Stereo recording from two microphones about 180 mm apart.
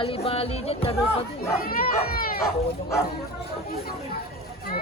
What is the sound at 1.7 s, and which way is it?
Speech, 55° left (ahead or behind).